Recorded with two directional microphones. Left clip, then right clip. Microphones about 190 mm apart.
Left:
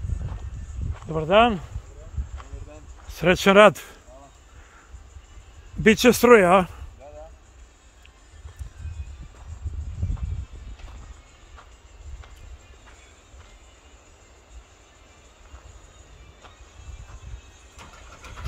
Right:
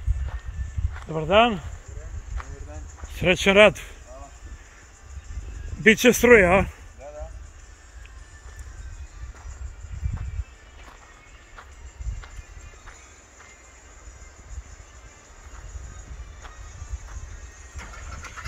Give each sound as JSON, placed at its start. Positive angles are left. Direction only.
{"t": 1.1, "sound": "speech", "side_deg": 30}
{"t": 2.7, "sound": "a sound", "side_deg": 40}
{"t": 5.9, "sound": "speech", "side_deg": 20}